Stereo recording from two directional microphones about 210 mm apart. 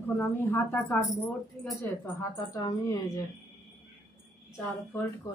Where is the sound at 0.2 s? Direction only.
10° left (ahead or behind).